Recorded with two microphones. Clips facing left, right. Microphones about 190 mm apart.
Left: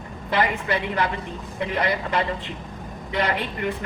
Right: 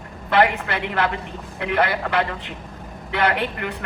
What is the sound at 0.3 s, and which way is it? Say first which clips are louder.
Speech: right 4 dB; 55° right (ahead or behind).